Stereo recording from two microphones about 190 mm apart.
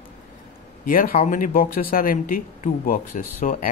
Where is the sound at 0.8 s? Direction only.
50° left (ahead or behind).